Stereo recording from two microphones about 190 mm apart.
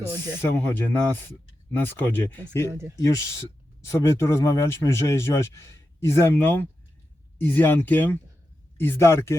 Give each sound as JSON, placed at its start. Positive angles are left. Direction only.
{"t": 0.0, "sound": "speech", "side_deg": 10}